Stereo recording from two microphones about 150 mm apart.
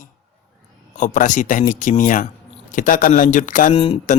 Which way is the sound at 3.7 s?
40° left (ahead or behind).